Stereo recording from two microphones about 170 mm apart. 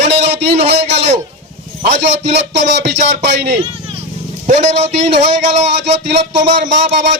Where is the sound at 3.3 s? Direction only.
75° right (ahead or behind).